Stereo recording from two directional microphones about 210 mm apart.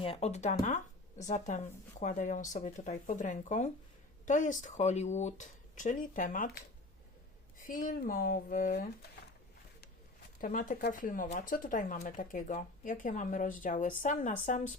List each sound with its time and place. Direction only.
0.0 s speech: 30° left (ahead or behind)
7.6 s speech: 40° left (ahead or behind)
10.4 s speech: 40° left (ahead or behind)